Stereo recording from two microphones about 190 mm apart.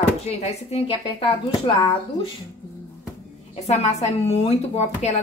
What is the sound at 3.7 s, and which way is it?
Speech, 35° left (ahead or behind).